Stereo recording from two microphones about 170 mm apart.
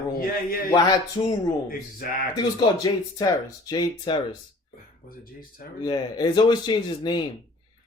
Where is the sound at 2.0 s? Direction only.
55° left (ahead or behind).